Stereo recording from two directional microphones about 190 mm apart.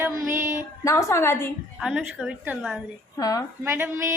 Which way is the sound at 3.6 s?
15° right (ahead or behind).